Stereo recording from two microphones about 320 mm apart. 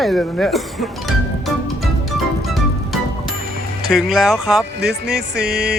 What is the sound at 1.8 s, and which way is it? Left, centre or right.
Music, centre.